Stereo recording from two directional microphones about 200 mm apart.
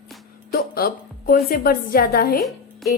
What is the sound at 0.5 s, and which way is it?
Music, 50° left (ahead or behind).